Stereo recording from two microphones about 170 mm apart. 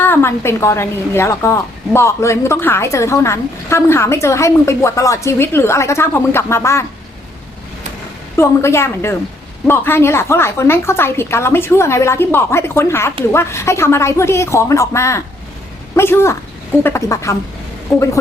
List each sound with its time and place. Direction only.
0.0 s speech: 15° left (ahead or behind)
8.4 s speech: 15° left (ahead or behind)